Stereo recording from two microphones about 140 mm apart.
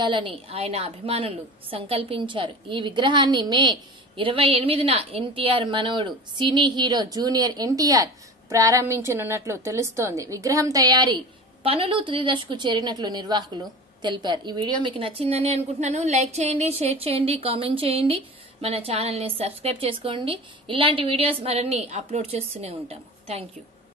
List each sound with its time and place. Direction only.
0.0 s a woman's voice: 35° right (ahead or behind)